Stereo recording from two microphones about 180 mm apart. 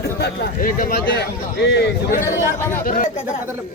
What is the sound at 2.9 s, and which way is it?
Speech, 50° left (ahead or behind).